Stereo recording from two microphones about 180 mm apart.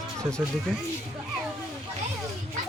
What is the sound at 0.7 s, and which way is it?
Speech, 5° left (ahead or behind).